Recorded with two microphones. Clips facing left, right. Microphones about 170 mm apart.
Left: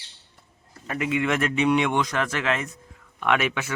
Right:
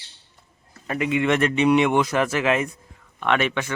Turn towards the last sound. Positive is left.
turn(degrees=5)  # may be behind; listen again after turning